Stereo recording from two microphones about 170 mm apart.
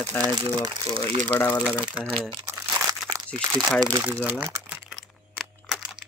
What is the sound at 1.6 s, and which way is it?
Speech, 5° right (ahead or behind).